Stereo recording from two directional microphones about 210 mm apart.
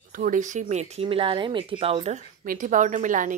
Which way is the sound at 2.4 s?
40° right (ahead or behind).